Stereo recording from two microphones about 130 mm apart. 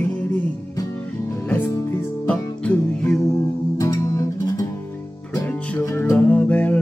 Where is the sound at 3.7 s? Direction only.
25° left (ahead or behind).